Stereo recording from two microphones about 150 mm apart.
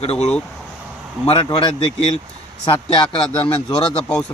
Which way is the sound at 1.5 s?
40° left (ahead or behind).